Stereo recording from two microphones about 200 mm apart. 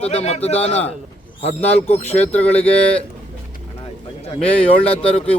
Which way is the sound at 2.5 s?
5° left (ahead or behind).